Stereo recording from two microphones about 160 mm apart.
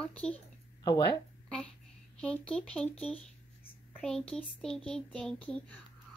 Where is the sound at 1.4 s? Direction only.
5° left (ahead or behind).